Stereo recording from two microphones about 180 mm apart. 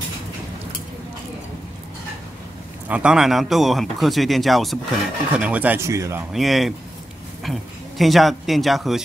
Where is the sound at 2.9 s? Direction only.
5° right (ahead or behind).